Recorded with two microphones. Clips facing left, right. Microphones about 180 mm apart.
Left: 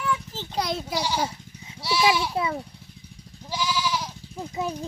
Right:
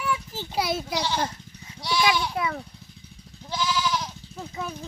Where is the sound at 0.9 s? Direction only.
10° left (ahead or behind).